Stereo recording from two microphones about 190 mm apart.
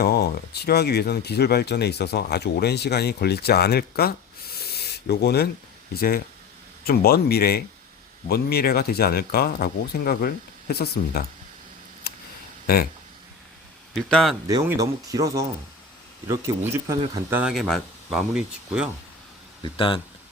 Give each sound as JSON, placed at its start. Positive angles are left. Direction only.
{"t": 0.0, "sound": "speech", "side_deg": 55}
{"t": 12.1, "sound": "a sound", "side_deg": 55}
{"t": 12.6, "sound": "speech", "side_deg": 50}
{"t": 13.9, "sound": "speech", "side_deg": 0}
{"t": 14.4, "sound": "speech", "side_deg": -15}
{"t": 19.6, "sound": "speech", "side_deg": 25}